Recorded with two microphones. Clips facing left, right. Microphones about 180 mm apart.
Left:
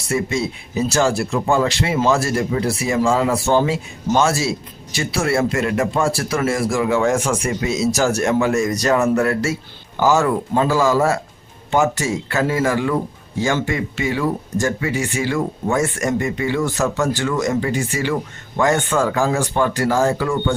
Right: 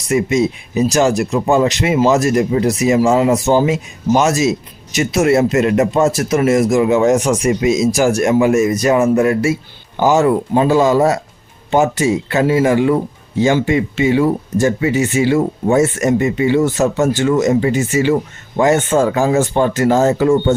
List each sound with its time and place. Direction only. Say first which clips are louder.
0.0 s speech: right 6 dB; 15° right (ahead or behind)